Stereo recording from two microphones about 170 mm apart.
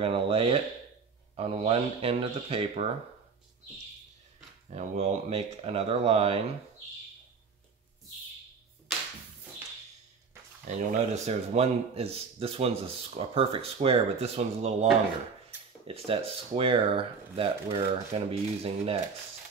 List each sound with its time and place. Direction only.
0.0 s a man's voice: 35° right (ahead or behind)
4.6 s a man's voice: 40° right (ahead or behind)
10.9 s a man's voice: 40° right (ahead or behind)
15.9 s a man's voice: 35° right (ahead or behind)